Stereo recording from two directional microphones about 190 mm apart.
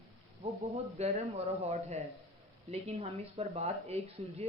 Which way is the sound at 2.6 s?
35° right (ahead or behind).